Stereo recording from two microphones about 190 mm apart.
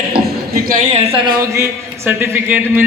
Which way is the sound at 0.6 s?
40° right (ahead or behind).